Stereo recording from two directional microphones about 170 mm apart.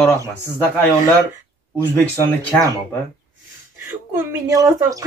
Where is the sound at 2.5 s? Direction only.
10° left (ahead or behind).